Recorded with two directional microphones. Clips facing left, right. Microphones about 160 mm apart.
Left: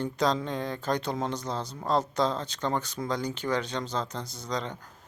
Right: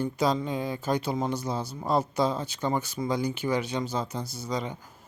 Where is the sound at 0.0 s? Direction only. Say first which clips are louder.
Right 1 dB; 5° right (ahead or behind).